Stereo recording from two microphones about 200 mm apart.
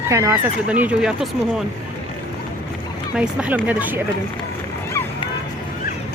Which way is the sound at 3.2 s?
5° right (ahead or behind).